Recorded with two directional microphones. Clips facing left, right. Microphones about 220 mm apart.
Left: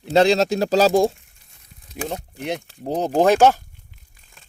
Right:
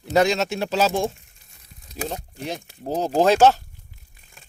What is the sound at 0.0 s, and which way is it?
Speech, 30° left (ahead or behind).